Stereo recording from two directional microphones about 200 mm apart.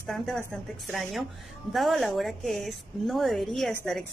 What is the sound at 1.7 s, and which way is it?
Speech, centre (ahead or behind).